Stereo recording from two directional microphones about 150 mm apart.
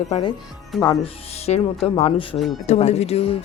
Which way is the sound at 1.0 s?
45° left (ahead or behind).